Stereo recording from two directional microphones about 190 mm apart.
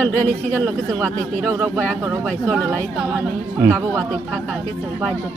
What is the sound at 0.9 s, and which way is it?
Speech, 15° right (ahead or behind).